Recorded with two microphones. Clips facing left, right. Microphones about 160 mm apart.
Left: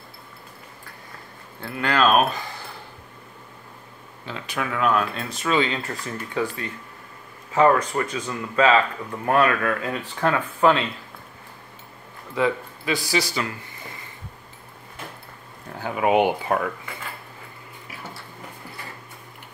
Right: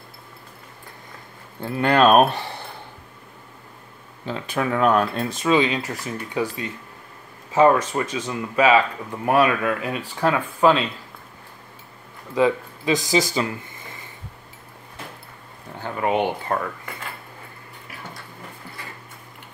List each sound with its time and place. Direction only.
1.6 s speech: 20° right (ahead or behind)
2.2 s speech: 70° right (ahead or behind)
4.3 s speech: 35° right (ahead or behind)
5.3 s speech: 20° right (ahead or behind)
12.4 s speech: 20° right (ahead or behind)
15.8 s speech: 10° left (ahead or behind)